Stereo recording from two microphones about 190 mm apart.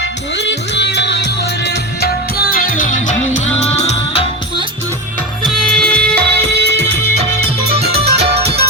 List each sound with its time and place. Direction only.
0.3 s music: 65° left (ahead or behind)
2.5 s music: 45° left (ahead or behind)
5.4 s music: centre (ahead or behind)
6.0 s music: 60° right (ahead or behind)
7.9 s music: 30° right (ahead or behind)